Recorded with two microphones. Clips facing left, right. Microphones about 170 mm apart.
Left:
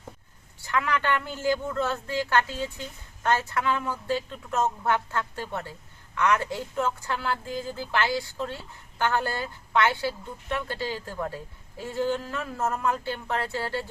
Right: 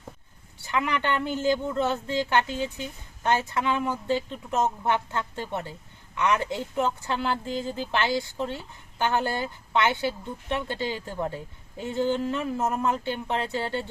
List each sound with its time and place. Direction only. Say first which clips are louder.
0.6 s a woman's voice: even; 15° right (ahead or behind)